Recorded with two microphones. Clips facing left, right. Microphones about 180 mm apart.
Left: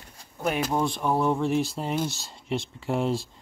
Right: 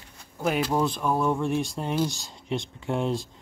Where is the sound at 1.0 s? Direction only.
25° left (ahead or behind).